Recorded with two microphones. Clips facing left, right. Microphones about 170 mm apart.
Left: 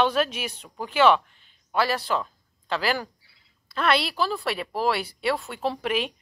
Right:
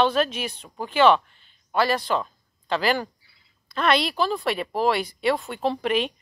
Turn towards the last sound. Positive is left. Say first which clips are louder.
# right 3 dB
turn(degrees=5)  # may be behind; listen again after turning